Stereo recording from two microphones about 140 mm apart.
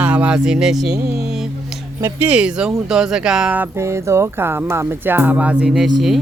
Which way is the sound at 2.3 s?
5° right (ahead or behind).